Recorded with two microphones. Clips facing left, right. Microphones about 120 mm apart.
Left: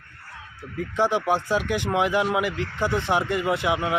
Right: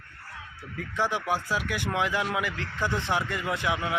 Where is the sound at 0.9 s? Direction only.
15° left (ahead or behind).